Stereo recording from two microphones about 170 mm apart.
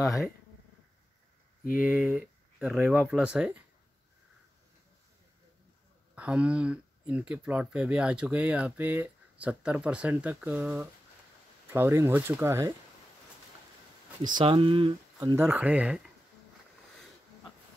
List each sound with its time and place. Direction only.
1.8 s speech: 10° right (ahead or behind)
6.1 s speech: 5° right (ahead or behind)
14.2 s speech: 25° right (ahead or behind); by 16.0 s 10° right (ahead or behind)